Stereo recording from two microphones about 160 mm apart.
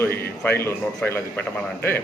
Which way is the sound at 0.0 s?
15° left (ahead or behind).